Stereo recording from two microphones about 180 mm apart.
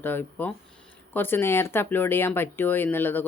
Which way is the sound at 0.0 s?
10° left (ahead or behind).